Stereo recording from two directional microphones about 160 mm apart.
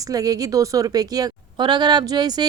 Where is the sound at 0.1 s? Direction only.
20° right (ahead or behind).